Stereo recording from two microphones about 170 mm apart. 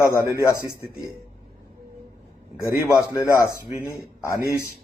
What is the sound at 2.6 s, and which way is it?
Speech, 15° left (ahead or behind).